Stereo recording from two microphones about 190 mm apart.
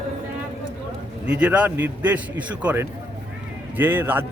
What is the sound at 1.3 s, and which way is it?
A man's voice, 5° right (ahead or behind).